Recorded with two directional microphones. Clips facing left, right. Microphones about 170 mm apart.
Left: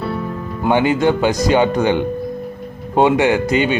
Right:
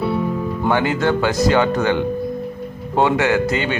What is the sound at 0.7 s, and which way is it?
Speech, 20° left (ahead or behind).